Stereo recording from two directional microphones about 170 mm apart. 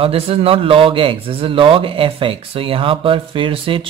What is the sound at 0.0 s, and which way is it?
A man's voice, 35° right (ahead or behind).